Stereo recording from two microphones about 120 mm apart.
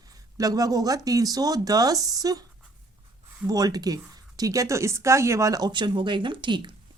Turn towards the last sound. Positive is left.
turn(degrees=-40)  # may be behind; listen again after turning